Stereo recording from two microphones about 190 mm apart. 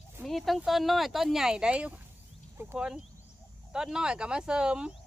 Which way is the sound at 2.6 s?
15° right (ahead or behind).